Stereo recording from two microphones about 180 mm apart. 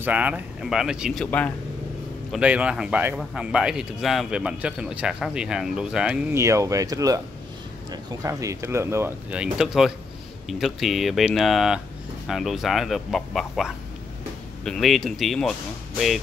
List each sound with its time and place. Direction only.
0.0 s speech: 10° right (ahead or behind)
1.2 s speech: 5° left (ahead or behind)
2.3 s speech: 5° right (ahead or behind)
6.3 s speech: 15° right (ahead or behind); by 15.5 s centre (ahead or behind)